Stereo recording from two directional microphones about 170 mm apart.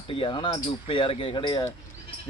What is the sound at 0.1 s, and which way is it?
Speech, 30° left (ahead or behind).